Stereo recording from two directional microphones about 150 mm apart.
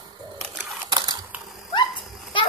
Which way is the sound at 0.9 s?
30° right (ahead or behind).